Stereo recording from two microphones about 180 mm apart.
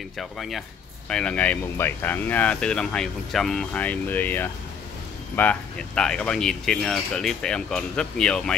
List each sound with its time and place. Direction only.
0.2 s speech: centre (ahead or behind)